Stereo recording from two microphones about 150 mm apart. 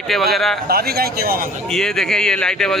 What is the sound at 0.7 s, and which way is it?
Speech, 90° right.